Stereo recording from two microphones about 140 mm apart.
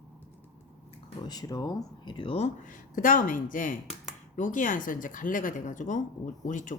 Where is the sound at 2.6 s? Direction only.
75° left (ahead or behind).